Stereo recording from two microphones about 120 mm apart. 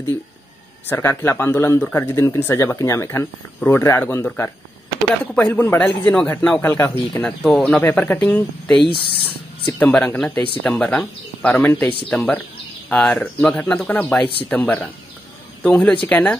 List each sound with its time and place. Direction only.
0.8 s speech: 20° left (ahead or behind)